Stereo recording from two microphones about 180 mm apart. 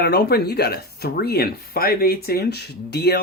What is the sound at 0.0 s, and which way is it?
Speech, 65° left (ahead or behind).